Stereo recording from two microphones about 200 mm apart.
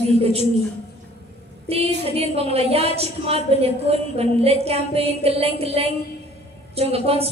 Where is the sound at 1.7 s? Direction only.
30° right (ahead or behind).